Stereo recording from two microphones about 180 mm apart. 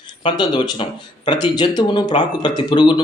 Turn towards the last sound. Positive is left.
turn(degrees=25)  # may be behind; listen again after turning